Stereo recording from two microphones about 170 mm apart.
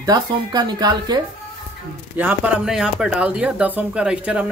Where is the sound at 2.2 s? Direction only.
10° right (ahead or behind).